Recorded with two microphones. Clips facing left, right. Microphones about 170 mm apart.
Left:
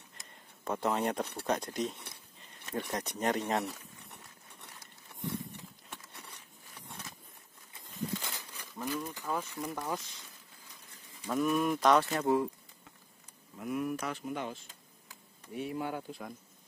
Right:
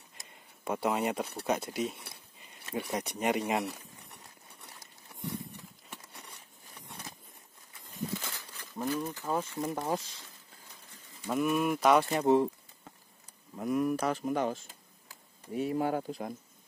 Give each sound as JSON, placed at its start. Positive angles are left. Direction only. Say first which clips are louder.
{"t": 0.2, "sound": "speech", "louder": "right 1 dB", "side_deg": -10}
{"t": 8.7, "sound": "speech", "louder": "right 4 dB", "side_deg": -20}
{"t": 11.2, "sound": "speech", "louder": "right 1 dB", "side_deg": -10}
{"t": 13.6, "sound": "speech", "louder": "right 5 dB", "side_deg": -40}